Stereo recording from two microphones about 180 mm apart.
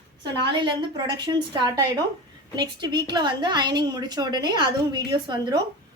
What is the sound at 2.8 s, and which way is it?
A woman's voice, 25° right (ahead or behind).